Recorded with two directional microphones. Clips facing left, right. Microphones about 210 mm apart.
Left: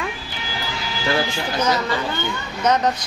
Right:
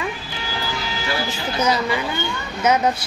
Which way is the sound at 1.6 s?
10° right (ahead or behind).